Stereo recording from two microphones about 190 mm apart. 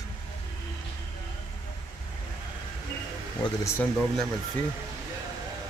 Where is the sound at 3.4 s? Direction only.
25° left (ahead or behind).